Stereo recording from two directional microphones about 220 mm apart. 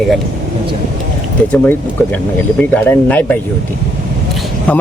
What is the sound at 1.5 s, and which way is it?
Speech, 5° left (ahead or behind).